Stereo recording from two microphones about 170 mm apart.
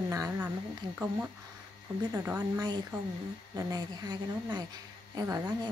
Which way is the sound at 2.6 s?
25° right (ahead or behind).